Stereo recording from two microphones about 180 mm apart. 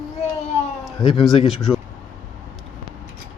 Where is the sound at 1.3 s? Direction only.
Centre (ahead or behind).